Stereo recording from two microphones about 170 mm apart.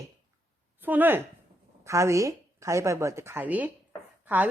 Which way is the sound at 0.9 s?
10° right (ahead or behind).